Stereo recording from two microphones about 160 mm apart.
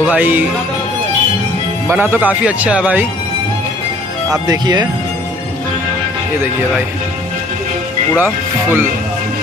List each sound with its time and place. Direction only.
0.0 s music: 10° right (ahead or behind)
1.9 s speech: 15° right (ahead or behind)
4.5 s speech: 25° right (ahead or behind)
8.2 s speech: 10° right (ahead or behind)